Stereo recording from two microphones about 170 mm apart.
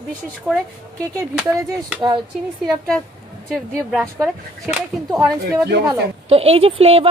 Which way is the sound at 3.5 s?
5° right (ahead or behind).